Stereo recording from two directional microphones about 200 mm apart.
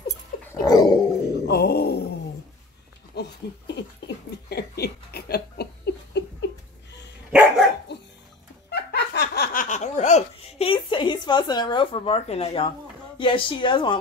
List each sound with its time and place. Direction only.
0.5 s dog: 20° left (ahead or behind)
1.5 s groan: 55° left (ahead or behind)
3.2 s a sound: 55° left (ahead or behind)
4.5 s chuckle: 55° left (ahead or behind)
7.2 s dog: 5° right (ahead or behind)
7.9 s dog: 60° left (ahead or behind)
8.6 s laughter: 55° left (ahead or behind); by 12.7 s 30° left (ahead or behind)
13.2 s a woman's voice: 25° left (ahead or behind)